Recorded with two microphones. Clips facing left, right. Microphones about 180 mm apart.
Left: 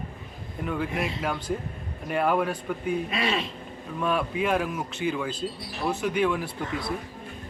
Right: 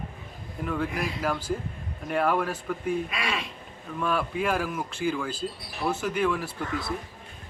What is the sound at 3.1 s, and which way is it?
Speech, 25° left (ahead or behind).